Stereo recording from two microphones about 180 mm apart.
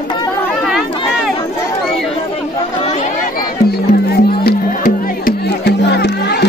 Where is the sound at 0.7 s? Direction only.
5° right (ahead or behind).